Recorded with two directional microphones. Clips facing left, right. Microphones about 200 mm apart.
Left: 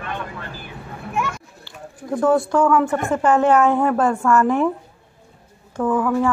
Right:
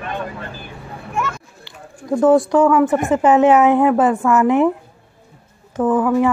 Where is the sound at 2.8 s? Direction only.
20° right (ahead or behind).